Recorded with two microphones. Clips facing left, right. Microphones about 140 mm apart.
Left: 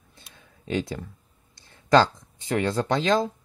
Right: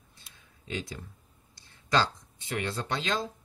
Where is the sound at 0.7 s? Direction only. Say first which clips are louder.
Left 9 dB; 60° left (ahead or behind).